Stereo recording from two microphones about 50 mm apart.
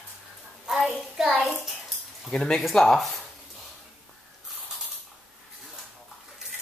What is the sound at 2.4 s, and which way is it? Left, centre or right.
Speech, centre.